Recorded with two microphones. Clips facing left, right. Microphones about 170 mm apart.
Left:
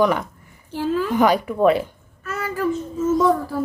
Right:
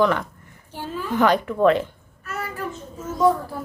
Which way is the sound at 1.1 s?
10° left (ahead or behind).